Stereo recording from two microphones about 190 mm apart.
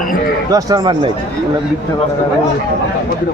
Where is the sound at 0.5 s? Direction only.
20° right (ahead or behind).